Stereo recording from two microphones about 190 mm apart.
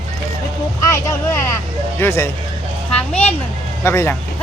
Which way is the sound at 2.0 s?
15° left (ahead or behind).